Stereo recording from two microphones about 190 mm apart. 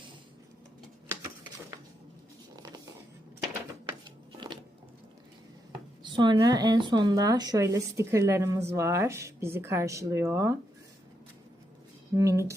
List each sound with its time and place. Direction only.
6.1 s speech: 25° right (ahead or behind)
12.1 s speech: 15° right (ahead or behind)